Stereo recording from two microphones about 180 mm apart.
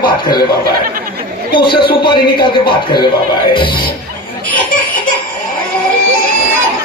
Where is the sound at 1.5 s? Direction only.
30° left (ahead or behind).